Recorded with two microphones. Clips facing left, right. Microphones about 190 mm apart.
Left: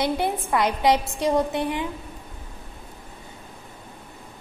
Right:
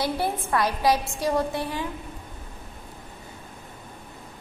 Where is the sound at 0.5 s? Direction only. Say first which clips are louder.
Left 2 dB; 20° left (ahead or behind).